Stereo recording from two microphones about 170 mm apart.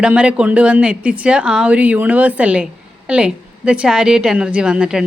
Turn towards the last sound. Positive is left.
turn(degrees=-5)  # may be behind; listen again after turning